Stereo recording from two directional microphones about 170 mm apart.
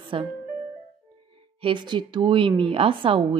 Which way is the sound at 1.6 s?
30° right (ahead or behind).